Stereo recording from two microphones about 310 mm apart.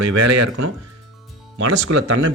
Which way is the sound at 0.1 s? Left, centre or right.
Right.